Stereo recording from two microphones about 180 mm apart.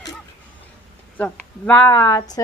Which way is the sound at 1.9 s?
20° left (ahead or behind).